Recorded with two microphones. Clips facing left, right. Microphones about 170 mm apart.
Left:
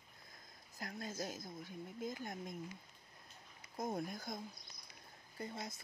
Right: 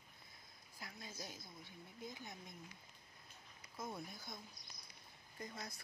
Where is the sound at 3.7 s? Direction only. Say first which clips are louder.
Left 7 dB; 45° left (ahead or behind).